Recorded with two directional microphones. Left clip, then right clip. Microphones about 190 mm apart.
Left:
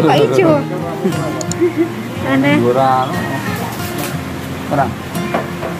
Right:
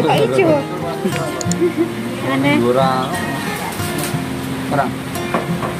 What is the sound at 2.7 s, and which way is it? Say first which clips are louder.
Speech: left 3 dB; 40° left (ahead or behind).